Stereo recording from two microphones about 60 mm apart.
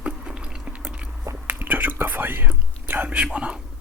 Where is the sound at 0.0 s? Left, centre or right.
Centre.